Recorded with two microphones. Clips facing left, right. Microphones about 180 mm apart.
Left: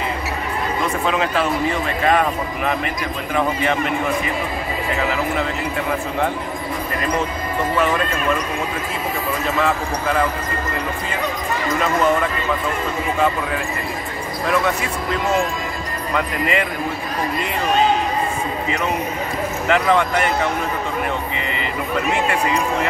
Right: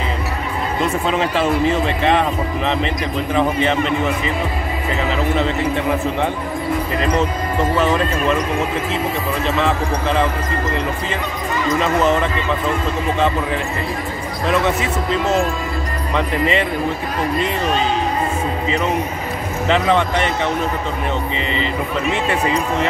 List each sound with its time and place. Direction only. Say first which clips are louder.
0.7 s speech: right 2 dB; 30° right (ahead or behind)
9.6 s speech: right 2 dB; 25° right (ahead or behind)
19.7 s speech: right 1 dB; 25° right (ahead or behind)